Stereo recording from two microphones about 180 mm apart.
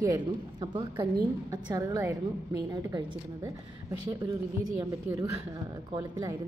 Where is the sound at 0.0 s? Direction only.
20° right (ahead or behind).